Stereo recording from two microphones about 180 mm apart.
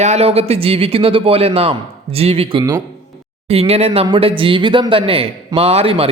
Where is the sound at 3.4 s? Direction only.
35° right (ahead or behind).